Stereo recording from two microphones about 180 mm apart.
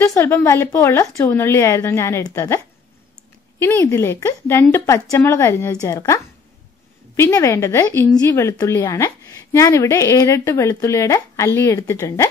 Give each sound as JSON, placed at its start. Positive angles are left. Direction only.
{"t": 0.0, "sound": "speech", "side_deg": 15}